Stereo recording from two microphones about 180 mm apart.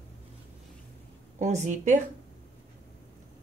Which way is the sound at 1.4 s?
40° right (ahead or behind).